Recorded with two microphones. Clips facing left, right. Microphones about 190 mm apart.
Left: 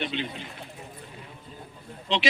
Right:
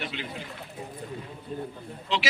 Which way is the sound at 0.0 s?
25° left (ahead or behind).